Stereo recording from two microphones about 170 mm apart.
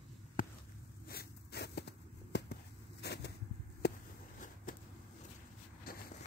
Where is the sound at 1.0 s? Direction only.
70° left (ahead or behind).